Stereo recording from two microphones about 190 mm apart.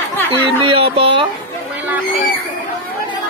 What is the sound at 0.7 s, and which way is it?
Speech, 30° right (ahead or behind).